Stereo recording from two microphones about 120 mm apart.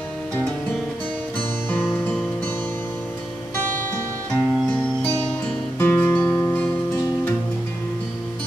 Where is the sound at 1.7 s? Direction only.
15° left (ahead or behind).